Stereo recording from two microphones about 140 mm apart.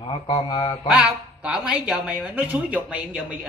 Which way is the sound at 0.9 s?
5° right (ahead or behind).